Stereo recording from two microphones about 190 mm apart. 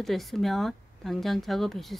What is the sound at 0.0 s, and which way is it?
Speech, centre (ahead or behind).